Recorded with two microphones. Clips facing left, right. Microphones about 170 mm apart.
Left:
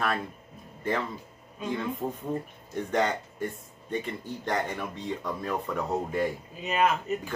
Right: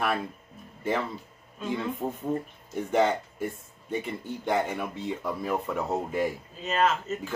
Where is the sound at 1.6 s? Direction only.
5° right (ahead or behind).